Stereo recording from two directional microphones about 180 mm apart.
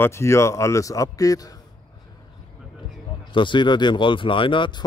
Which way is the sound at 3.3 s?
25° left (ahead or behind).